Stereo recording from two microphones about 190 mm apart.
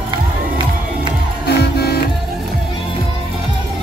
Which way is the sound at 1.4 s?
55° left (ahead or behind).